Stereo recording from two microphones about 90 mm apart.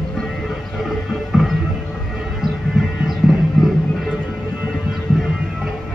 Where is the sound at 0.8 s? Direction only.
Centre (ahead or behind).